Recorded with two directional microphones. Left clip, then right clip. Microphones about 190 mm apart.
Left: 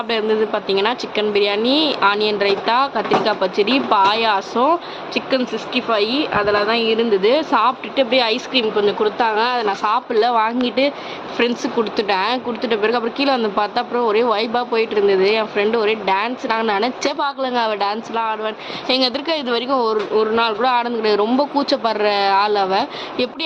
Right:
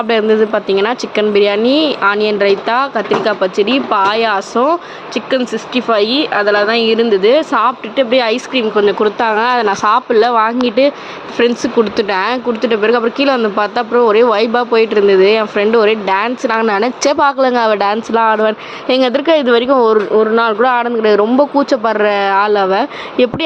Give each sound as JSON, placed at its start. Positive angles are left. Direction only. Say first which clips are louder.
{"t": 0.1, "sound": "speech", "louder": "right 6 dB", "side_deg": -30}